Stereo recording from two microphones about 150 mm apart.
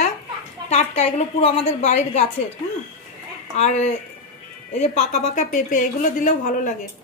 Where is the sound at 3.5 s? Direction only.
50° left (ahead or behind).